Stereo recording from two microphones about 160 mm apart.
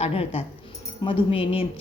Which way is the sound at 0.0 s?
35° left (ahead or behind).